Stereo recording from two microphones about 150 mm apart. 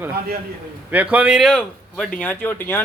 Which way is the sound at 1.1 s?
5° right (ahead or behind).